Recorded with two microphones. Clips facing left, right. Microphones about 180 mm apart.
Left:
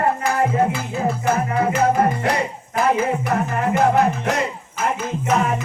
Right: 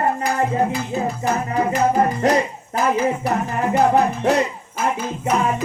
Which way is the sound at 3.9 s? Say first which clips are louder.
Right 2 dB; 35° right (ahead or behind).